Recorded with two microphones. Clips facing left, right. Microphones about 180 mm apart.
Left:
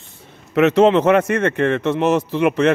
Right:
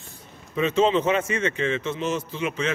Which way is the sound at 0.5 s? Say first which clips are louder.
Left 8 dB; 75° left (ahead or behind).